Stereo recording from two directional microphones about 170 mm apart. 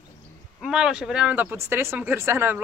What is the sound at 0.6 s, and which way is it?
Speech, 5° right (ahead or behind).